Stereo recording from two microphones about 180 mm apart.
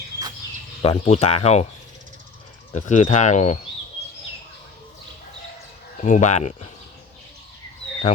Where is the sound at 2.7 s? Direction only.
40° left (ahead or behind).